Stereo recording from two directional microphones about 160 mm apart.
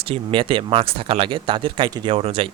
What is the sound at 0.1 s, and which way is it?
Speech, 35° right (ahead or behind).